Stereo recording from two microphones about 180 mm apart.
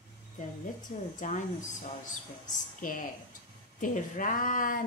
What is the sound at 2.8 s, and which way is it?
A woman's voice, 50° left (ahead or behind).